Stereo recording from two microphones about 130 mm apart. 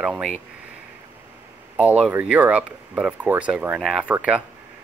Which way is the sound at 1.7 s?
10° right (ahead or behind).